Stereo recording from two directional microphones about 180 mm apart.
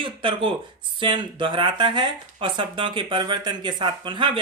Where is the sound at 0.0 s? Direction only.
30° right (ahead or behind).